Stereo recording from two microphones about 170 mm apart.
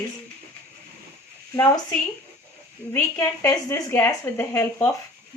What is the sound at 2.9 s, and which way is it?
A woman's voice, 15° left (ahead or behind).